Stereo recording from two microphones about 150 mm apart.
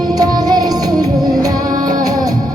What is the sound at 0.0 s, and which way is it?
Music, 25° right (ahead or behind).